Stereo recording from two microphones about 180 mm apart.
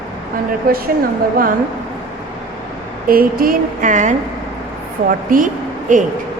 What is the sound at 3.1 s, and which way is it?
A woman's voice, 55° right (ahead or behind).